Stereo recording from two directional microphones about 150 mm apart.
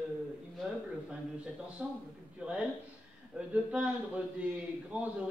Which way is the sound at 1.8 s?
5° right (ahead or behind).